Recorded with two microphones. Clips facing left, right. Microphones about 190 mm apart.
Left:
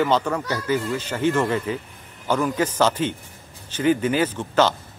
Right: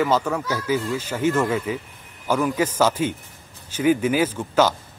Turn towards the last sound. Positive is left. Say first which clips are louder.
# even
turn(degrees=-10)  # may be behind; listen again after turning